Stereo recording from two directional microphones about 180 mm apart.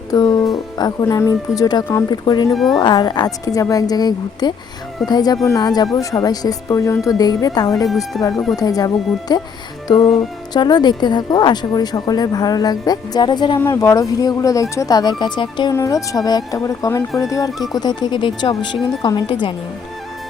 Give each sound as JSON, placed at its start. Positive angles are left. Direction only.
{"t": 0.1, "sound": "speech", "side_deg": 20}
{"t": 2.5, "sound": "speech", "side_deg": 0}
{"t": 2.7, "sound": "speech", "side_deg": 25}
{"t": 7.9, "sound": "speech", "side_deg": 0}
{"t": 8.5, "sound": "speech", "side_deg": 20}
{"t": 10.5, "sound": "speech", "side_deg": 25}
{"t": 13.6, "sound": "speech", "side_deg": 15}